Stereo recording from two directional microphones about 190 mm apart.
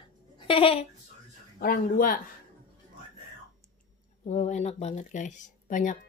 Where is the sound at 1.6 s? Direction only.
50° left (ahead or behind).